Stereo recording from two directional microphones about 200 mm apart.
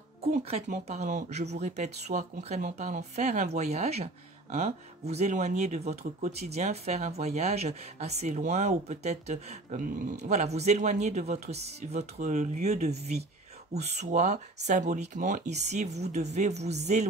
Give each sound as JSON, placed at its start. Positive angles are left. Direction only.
{"t": 0.4, "sound": "speech", "side_deg": -30}